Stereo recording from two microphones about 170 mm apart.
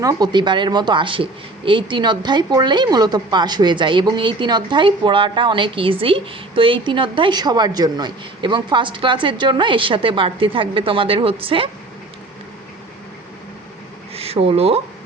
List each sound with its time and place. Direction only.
0.0 s speech: 20° right (ahead or behind)
14.1 s speech: 35° right (ahead or behind)